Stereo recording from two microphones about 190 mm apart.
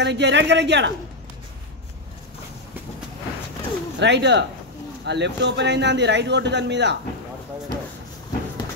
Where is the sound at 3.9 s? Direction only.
65° right (ahead or behind).